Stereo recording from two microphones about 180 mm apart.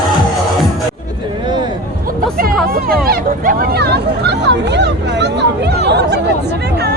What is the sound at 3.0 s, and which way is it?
Hubbub, 55° right (ahead or behind).